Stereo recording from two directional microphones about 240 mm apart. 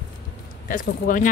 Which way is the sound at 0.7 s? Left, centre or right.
Left.